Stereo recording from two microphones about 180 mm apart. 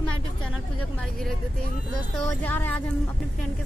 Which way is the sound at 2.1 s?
10° left (ahead or behind).